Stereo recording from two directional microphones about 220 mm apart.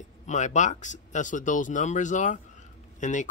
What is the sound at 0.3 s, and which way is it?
Speech, 35° left (ahead or behind).